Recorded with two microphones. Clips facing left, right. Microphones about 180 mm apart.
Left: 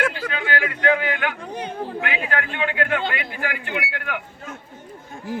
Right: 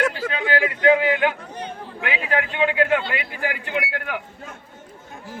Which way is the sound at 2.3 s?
20° right (ahead or behind).